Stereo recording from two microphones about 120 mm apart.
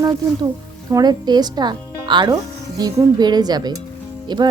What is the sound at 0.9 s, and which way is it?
Speech, 35° right (ahead or behind).